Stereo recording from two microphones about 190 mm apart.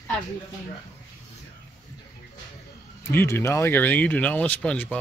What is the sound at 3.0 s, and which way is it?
Speech, 10° left (ahead or behind).